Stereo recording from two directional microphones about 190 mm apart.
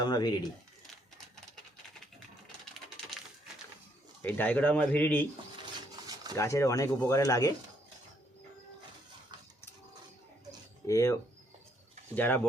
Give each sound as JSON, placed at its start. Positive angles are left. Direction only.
{"t": 0.0, "sound": "speech", "side_deg": 20}
{"t": 4.2, "sound": "speech", "side_deg": 10}
{"t": 6.3, "sound": "speech", "side_deg": 15}
{"t": 10.8, "sound": "speech", "side_deg": 15}